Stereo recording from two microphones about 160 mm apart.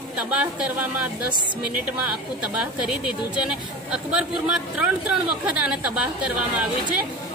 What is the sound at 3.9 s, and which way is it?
Speech, 5° right (ahead or behind).